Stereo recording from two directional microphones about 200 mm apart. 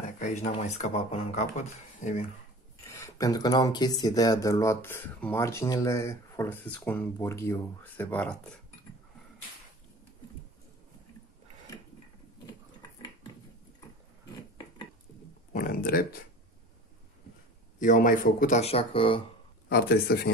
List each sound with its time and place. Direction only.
0.0 s a sound: 40° left (ahead or behind)
0.6 s speech: 35° left (ahead or behind)
2.9 s speech: 15° left (ahead or behind)
15.5 s speech: 45° left (ahead or behind)
17.7 s speech: 40° left (ahead or behind)
19.7 s speech: 50° left (ahead or behind)